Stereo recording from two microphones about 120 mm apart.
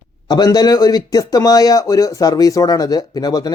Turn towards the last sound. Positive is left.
turn(degrees=35)  # may be behind; listen again after turning